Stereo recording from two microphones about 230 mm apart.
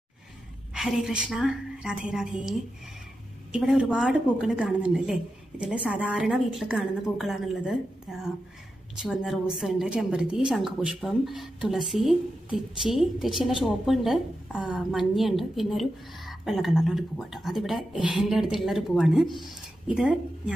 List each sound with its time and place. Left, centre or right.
0.7 s a woman's voice: centre
3.5 s a woman's voice: centre